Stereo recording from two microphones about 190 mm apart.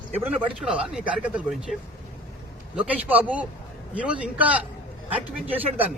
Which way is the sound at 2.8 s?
5° right (ahead or behind).